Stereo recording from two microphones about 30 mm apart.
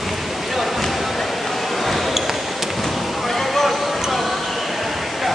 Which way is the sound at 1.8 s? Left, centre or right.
Centre.